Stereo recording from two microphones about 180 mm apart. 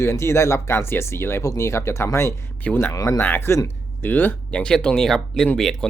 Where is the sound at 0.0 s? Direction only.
15° left (ahead or behind).